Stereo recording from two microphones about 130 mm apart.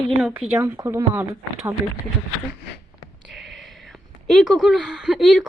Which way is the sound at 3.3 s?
Centre (ahead or behind).